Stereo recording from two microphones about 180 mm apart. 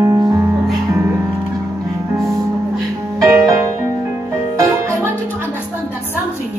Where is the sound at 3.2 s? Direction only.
15° right (ahead or behind).